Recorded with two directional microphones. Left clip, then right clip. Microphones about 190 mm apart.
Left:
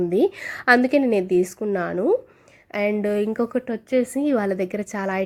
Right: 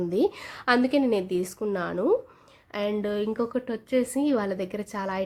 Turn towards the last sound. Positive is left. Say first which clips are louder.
# left 5 dB
turn(degrees=20)  # may be behind; listen again after turning